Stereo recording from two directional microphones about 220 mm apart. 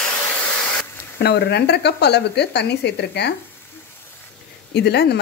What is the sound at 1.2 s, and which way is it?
Speech, 50° left (ahead or behind).